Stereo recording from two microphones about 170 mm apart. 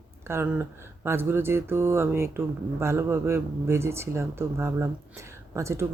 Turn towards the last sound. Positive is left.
turn(degrees=-15)  # may be behind; listen again after turning